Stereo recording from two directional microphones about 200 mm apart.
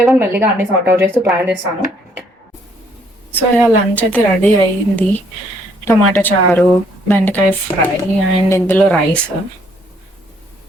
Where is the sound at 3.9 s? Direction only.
10° left (ahead or behind).